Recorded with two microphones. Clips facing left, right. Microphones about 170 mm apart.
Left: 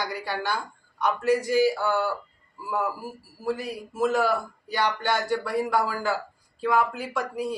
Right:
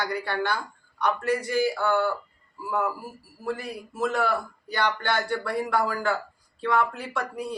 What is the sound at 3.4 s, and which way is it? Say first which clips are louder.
A woman's voice: left 2 dB; 10° left (ahead or behind).